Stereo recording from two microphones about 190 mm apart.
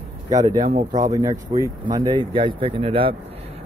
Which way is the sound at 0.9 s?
20° right (ahead or behind).